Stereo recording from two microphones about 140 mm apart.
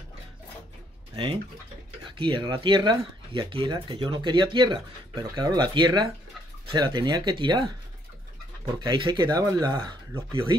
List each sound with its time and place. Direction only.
1.1 s speech: 35° right (ahead or behind)
8.8 s speech: 35° right (ahead or behind)